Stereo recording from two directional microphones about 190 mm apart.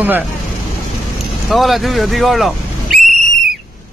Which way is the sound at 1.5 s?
Centre (ahead or behind).